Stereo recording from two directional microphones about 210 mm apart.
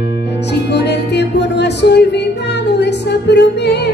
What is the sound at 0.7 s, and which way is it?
Music, 55° left (ahead or behind).